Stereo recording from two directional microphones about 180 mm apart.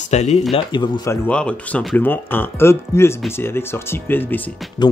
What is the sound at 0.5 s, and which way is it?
Speech, 25° left (ahead or behind).